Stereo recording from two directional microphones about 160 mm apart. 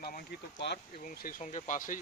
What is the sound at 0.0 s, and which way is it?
Speech, 70° left (ahead or behind).